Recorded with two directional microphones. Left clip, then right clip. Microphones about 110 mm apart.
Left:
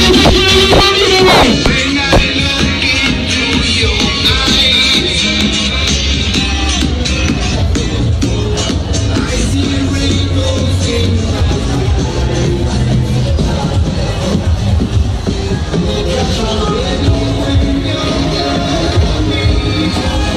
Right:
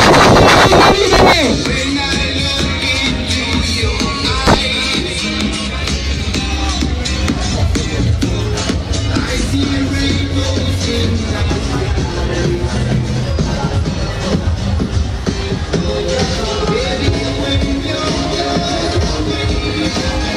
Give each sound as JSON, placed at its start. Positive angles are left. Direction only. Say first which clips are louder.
{"t": 0.0, "sound": "music", "louder": "right 2 dB", "side_deg": -60}